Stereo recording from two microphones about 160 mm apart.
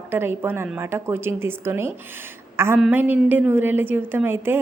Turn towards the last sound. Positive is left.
turn(degrees=-15)  # may be behind; listen again after turning